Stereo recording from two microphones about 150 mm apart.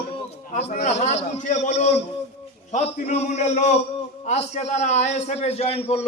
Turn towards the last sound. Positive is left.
turn(degrees=40)  # may be behind; listen again after turning